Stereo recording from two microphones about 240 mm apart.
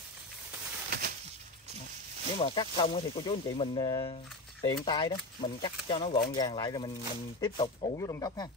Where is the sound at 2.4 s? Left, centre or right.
Centre.